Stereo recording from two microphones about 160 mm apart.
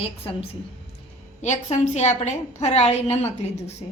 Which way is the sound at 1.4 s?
45° left (ahead or behind).